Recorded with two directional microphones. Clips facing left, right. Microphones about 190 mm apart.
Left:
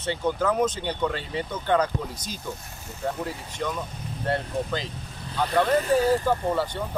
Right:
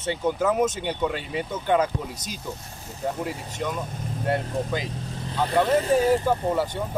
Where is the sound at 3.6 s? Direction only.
10° right (ahead or behind).